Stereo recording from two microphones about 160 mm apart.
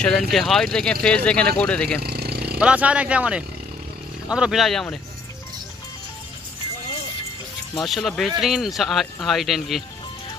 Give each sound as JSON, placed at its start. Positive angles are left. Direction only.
{"t": 0.0, "sound": "speech", "side_deg": 5}
{"t": 2.0, "sound": "vehicle", "side_deg": -85}
{"t": 2.6, "sound": "speech", "side_deg": -10}
{"t": 7.7, "sound": "speech", "side_deg": 0}